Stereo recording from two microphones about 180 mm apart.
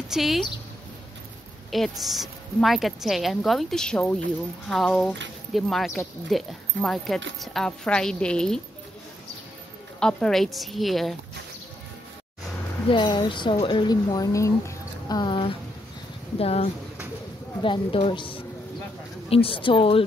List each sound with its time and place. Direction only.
0.1 s a woman's voice: centre (ahead or behind)
1.7 s a woman's voice: centre (ahead or behind)
9.9 s a woman's voice: 5° left (ahead or behind)
12.8 s a woman's voice: 25° left (ahead or behind)